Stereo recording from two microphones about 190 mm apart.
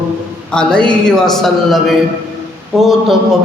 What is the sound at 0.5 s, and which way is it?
A man's voice, 5° left (ahead or behind).